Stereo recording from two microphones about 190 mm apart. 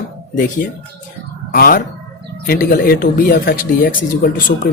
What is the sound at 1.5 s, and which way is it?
Speech, 50° left (ahead or behind).